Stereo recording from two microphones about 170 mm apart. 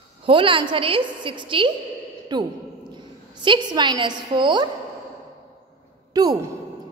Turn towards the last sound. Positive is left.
turn(degrees=-20)  # may be behind; listen again after turning